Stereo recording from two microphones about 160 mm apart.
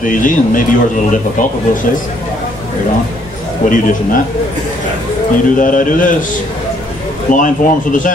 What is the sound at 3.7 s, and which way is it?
Speech, 55° left (ahead or behind).